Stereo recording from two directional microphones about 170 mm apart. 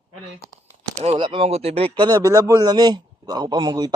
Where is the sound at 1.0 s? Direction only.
30° right (ahead or behind).